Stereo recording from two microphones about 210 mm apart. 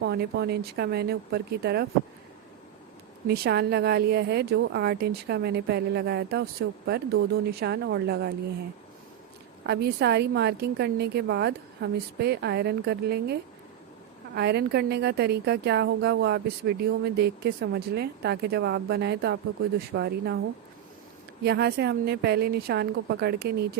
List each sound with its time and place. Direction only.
0.0 s speech: 50° right (ahead or behind)
3.2 s speech: 50° right (ahead or behind)
9.6 s speech: 50° right (ahead or behind)
21.4 s speech: 50° right (ahead or behind)